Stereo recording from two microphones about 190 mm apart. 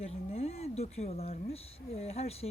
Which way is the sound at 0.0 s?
35° left (ahead or behind).